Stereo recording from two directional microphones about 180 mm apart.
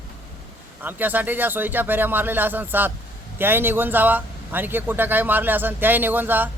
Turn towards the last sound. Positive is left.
turn(degrees=-10)  # may be behind; listen again after turning